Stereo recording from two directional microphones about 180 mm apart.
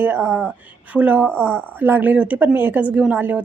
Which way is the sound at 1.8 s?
10° right (ahead or behind).